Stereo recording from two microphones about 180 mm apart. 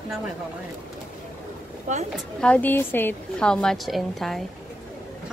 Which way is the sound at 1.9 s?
45° right (ahead or behind).